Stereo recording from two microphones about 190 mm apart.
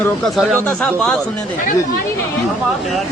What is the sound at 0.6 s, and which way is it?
Speech, 5° left (ahead or behind).